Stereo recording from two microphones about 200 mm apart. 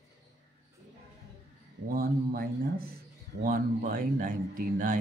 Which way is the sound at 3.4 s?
45° right (ahead or behind).